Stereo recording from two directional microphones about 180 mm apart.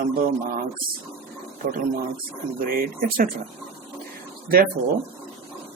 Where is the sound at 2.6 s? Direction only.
55° right (ahead or behind).